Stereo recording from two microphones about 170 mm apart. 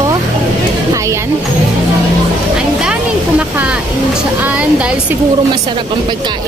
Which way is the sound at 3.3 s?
5° right (ahead or behind).